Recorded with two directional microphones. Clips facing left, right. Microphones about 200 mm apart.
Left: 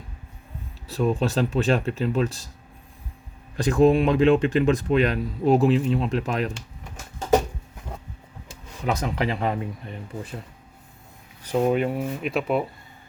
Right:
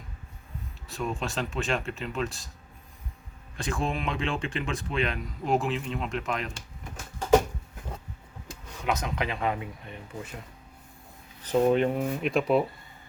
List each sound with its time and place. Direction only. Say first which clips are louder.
0.9 s speech: left 9 dB; 35° left (ahead or behind)
3.6 s speech: left 13 dB; 40° left (ahead or behind)
8.9 s speech: left 4 dB; 30° left (ahead or behind)
11.4 s speech: left 1 dB; 10° left (ahead or behind)